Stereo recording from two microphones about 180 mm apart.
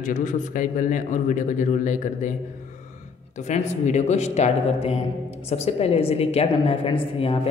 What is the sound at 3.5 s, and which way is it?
A woman's voice, 40° left (ahead or behind).